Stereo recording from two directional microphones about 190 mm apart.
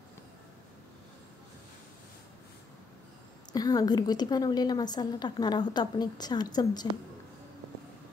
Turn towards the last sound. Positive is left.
turn(degrees=20)  # may be behind; listen again after turning